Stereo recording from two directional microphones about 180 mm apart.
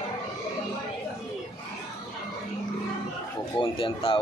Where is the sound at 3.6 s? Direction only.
30° left (ahead or behind).